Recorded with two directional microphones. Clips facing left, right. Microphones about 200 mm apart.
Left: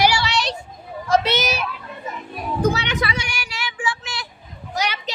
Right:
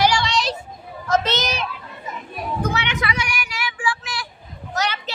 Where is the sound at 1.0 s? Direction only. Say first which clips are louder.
Left 2 dB; 10° left (ahead or behind).